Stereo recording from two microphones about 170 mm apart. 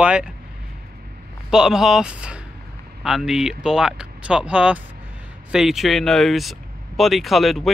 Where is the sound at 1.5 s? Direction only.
5° right (ahead or behind).